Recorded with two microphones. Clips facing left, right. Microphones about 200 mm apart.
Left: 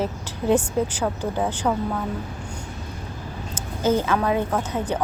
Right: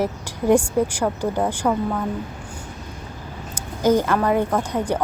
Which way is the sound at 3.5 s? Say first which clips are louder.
Right 3 dB; 15° right (ahead or behind).